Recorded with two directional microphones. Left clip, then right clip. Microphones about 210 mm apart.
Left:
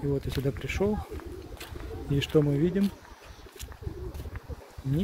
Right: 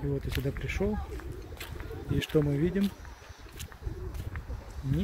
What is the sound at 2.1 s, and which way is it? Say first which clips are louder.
Speech: left 3 dB; 5° left (ahead or behind).